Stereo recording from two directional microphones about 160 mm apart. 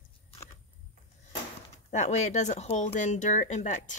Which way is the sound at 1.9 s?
45° left (ahead or behind).